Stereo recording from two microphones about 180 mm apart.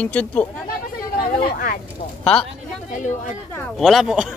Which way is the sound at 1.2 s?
55° left (ahead or behind).